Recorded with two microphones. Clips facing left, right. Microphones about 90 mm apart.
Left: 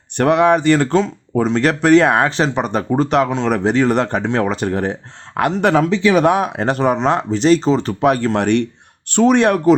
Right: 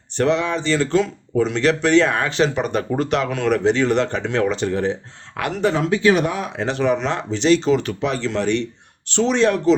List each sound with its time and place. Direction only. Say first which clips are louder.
0.2 s speech: left 6 dB; 55° left (ahead or behind)
0.9 s speech: left 2 dB; 35° left (ahead or behind)
6.2 s speech: left 8 dB; 60° left (ahead or behind); by 7.9 s 35° left (ahead or behind)
8.0 s speech: left 6 dB; 50° left (ahead or behind)